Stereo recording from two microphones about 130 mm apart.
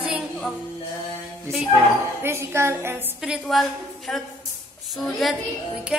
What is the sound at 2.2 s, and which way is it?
Music, 20° right (ahead or behind).